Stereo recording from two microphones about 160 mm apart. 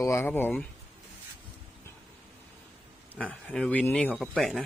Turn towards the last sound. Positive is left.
turn(degrees=0)  # may be behind; listen again after turning